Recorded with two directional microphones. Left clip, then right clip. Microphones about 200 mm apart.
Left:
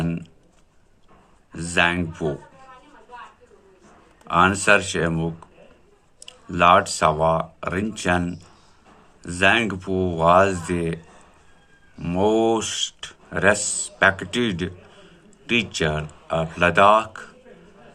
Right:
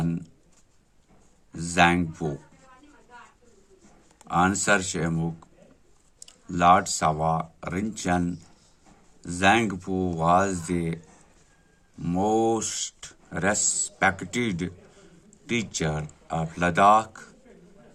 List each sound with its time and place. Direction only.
1.5 s speech: 45° right (ahead or behind)
4.3 s speech: 45° right (ahead or behind)
6.5 s speech: 45° right (ahead or behind)
12.0 s speech: 45° right (ahead or behind)